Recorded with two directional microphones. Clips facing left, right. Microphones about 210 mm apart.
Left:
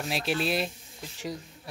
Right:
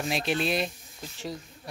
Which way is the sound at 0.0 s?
5° left (ahead or behind).